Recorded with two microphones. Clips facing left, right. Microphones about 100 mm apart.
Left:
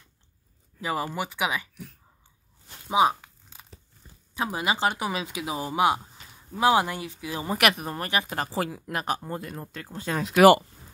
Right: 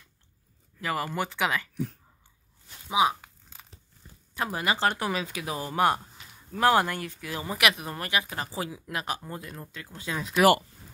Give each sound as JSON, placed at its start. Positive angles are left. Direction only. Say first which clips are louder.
{"t": 0.7, "sound": "speech", "louder": "left 1 dB", "side_deg": 20}
{"t": 2.9, "sound": "speech", "louder": "left 3 dB", "side_deg": 35}
{"t": 4.3, "sound": "speech", "louder": "left 1 dB", "side_deg": 15}
{"t": 7.8, "sound": "speech", "louder": "left 2 dB", "side_deg": 35}
{"t": 8.5, "sound": "speech", "louder": "left 3 dB", "side_deg": 50}
{"t": 10.1, "sound": "speech", "louder": "left 5 dB", "side_deg": 70}